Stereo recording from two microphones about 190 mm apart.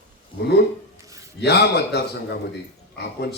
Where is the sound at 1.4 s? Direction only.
60° left (ahead or behind).